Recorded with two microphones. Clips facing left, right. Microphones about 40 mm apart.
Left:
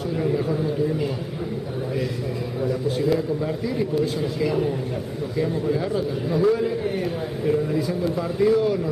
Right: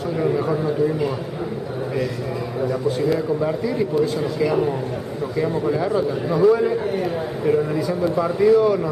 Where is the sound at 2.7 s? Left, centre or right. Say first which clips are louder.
Right 1 dB; centre.